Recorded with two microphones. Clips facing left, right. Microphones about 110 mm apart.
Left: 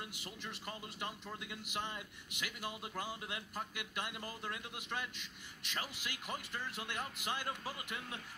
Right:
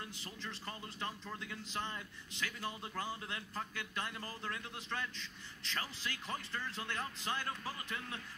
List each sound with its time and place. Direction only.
0.2 s a man's voice: 15° left (ahead or behind)